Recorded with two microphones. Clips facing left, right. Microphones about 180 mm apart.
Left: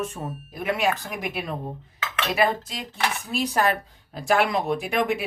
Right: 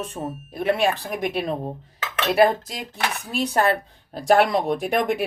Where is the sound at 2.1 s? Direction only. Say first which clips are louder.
Right 5 dB; 40° right (ahead or behind).